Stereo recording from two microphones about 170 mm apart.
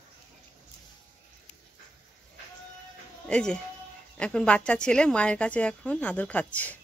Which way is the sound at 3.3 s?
5° left (ahead or behind).